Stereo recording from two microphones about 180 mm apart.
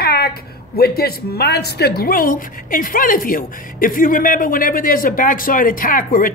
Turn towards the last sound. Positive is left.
turn(degrees=50)  # may be behind; listen again after turning